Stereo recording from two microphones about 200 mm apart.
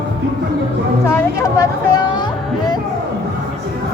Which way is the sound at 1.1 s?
15° left (ahead or behind).